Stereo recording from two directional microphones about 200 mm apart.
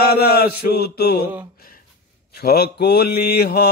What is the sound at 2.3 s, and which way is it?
Mantra, 50° left (ahead or behind).